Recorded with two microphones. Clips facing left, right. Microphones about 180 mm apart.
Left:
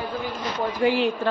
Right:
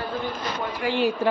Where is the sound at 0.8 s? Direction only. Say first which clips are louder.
Left 6 dB; 30° left (ahead or behind).